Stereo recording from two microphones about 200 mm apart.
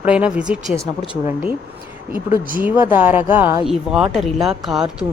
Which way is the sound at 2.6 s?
10° right (ahead or behind).